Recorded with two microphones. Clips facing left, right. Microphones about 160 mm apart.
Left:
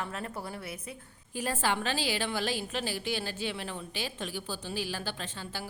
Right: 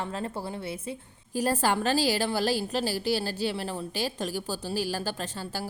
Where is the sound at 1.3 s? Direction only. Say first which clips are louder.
Right 5 dB; 40° right (ahead or behind).